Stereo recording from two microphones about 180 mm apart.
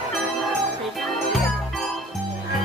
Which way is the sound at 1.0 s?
Centre (ahead or behind).